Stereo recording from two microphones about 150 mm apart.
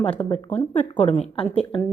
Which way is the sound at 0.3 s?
40° left (ahead or behind).